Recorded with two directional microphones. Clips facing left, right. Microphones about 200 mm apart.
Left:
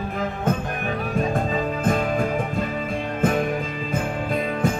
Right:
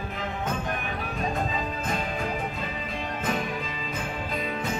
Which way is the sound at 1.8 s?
50° left (ahead or behind).